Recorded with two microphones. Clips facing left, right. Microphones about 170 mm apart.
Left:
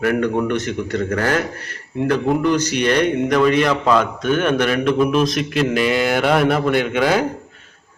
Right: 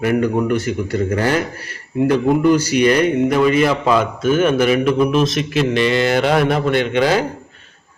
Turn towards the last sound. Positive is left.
turn(degrees=5)  # may be behind; listen again after turning